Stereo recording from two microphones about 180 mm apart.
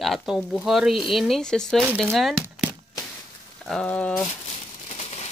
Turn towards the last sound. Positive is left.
turn(degrees=35)  # may be behind; listen again after turning